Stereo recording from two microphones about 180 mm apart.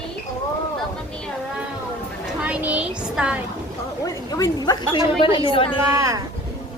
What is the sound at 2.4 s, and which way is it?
A woman's voice, 5° right (ahead or behind).